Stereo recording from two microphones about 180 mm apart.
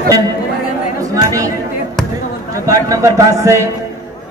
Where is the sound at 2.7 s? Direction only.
15° right (ahead or behind).